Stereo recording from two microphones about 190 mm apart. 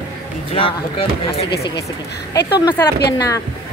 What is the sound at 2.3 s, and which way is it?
Speech, 60° left (ahead or behind).